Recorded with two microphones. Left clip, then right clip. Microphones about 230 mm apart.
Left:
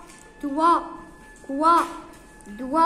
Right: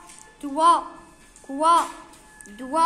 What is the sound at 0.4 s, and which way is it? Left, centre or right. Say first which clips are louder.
Speech: right 2 dB; right.